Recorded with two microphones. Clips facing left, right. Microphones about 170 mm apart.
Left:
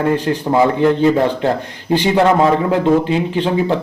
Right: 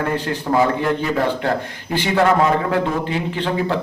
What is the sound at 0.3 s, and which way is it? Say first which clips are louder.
Speech: left 6 dB; 25° left (ahead or behind).